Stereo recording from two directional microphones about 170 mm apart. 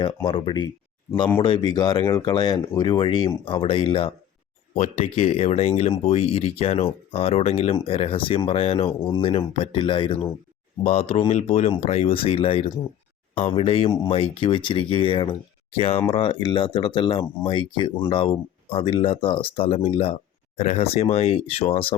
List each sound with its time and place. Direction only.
0.3 s speech: 30° left (ahead or behind)